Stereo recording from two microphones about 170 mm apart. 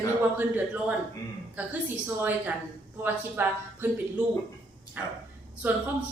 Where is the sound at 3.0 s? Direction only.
10° right (ahead or behind).